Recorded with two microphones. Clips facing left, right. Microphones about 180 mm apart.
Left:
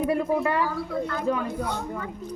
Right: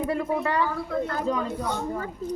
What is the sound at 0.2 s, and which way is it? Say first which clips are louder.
A woman's voice: left 1 dB; centre (ahead or behind).